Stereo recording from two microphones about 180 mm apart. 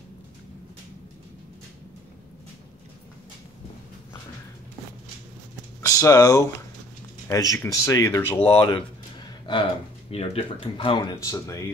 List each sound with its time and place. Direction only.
5.8 s a sound: 15° left (ahead or behind)
7.2 s speech: 15° left (ahead or behind)
8.5 s speech: 30° left (ahead or behind)